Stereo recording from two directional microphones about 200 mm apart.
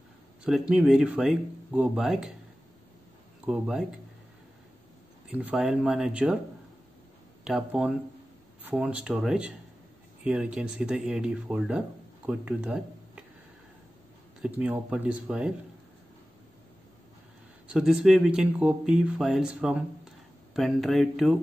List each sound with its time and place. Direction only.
0.4 s speech: 5° right (ahead or behind)
3.4 s speech: 5° right (ahead or behind)
5.3 s speech: 5° right (ahead or behind)
7.4 s speech: 5° right (ahead or behind)
14.4 s speech: 5° right (ahead or behind)
17.6 s speech: 5° right (ahead or behind)